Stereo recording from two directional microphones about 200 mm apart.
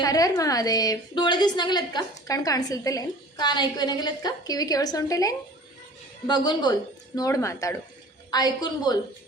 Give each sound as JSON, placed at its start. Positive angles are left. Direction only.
{"t": 0.0, "sound": "a woman's voice", "side_deg": 20}